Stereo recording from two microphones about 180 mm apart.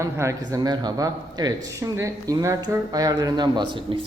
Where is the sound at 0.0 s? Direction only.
15° right (ahead or behind).